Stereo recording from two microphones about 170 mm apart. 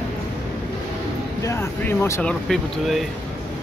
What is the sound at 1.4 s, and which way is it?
Speech, 15° left (ahead or behind).